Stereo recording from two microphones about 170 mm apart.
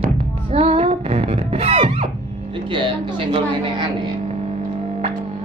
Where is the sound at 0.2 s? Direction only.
35° right (ahead or behind).